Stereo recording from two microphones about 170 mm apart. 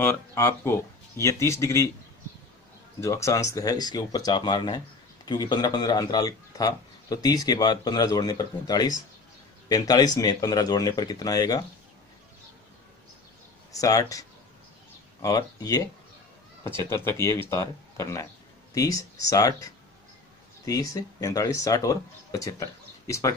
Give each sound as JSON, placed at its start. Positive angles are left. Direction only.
{"t": 0.0, "sound": "speech", "side_deg": 15}
{"t": 3.0, "sound": "speech", "side_deg": 15}
{"t": 13.7, "sound": "speech", "side_deg": 20}
{"t": 15.2, "sound": "speech", "side_deg": 20}